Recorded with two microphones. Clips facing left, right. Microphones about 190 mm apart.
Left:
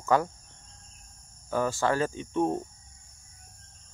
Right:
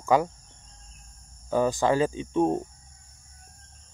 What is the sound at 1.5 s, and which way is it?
Speech, 15° right (ahead or behind).